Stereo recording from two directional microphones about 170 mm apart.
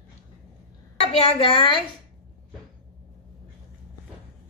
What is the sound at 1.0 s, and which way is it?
Speech, 35° left (ahead or behind).